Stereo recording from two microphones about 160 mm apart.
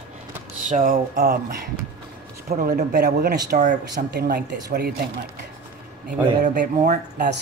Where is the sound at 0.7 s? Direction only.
55° right (ahead or behind).